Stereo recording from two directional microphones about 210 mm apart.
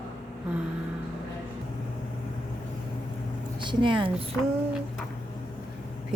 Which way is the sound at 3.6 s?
25° right (ahead or behind).